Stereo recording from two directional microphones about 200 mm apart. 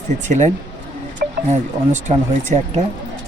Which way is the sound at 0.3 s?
35° right (ahead or behind).